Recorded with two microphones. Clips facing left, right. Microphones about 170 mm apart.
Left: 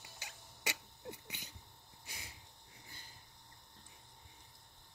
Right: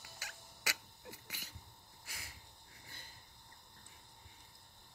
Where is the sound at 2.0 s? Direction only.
20° left (ahead or behind).